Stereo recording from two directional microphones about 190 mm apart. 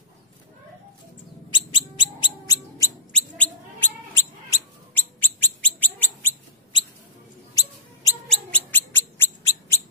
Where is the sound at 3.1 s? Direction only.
5° left (ahead or behind).